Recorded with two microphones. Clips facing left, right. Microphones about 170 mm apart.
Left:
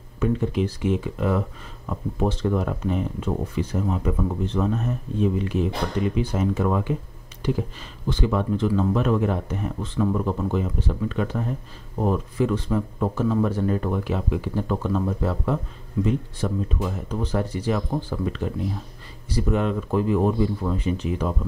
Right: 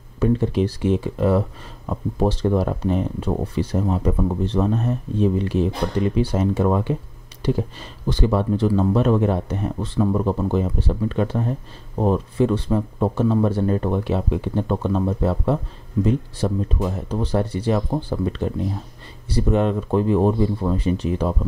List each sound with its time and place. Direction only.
0.2 s speech: 30° right (ahead or behind)
8.1 s speech: 35° right (ahead or behind)